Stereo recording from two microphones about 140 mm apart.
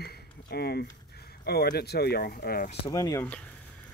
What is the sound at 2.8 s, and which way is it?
Speech, 25° left (ahead or behind).